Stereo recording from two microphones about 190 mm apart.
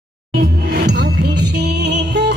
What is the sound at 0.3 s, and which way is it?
Music, 60° right (ahead or behind).